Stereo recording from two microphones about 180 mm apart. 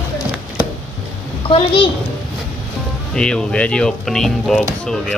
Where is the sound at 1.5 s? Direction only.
30° left (ahead or behind).